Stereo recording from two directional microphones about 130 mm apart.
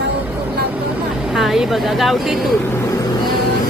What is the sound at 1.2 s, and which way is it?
Speech, centre (ahead or behind).